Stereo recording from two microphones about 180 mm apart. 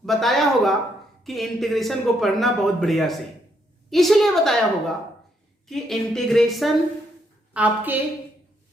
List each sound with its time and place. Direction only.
0.0 s a sound: centre (ahead or behind)
1.2 s a man's voice: centre (ahead or behind)
5.6 s a man's voice: centre (ahead or behind)